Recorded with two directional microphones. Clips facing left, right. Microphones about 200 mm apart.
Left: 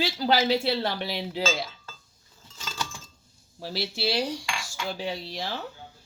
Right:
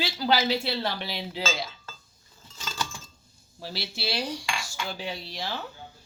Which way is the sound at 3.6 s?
45° left (ahead or behind).